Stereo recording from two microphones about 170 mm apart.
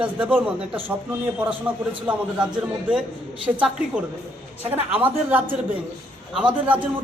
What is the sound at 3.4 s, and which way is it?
A woman's voice, 5° right (ahead or behind).